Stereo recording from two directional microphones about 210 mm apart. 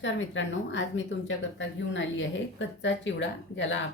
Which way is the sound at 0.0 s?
60° left (ahead or behind).